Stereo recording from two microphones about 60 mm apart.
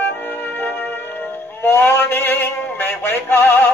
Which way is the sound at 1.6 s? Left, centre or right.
Left.